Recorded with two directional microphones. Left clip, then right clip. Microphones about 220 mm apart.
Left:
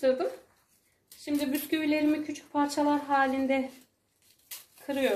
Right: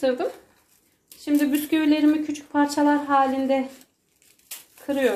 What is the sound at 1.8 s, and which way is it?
A woman's voice, 25° right (ahead or behind).